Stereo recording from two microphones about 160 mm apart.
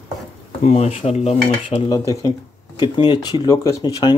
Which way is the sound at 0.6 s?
45° left (ahead or behind).